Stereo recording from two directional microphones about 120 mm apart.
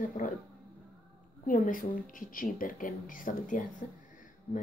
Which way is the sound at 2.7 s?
90° left.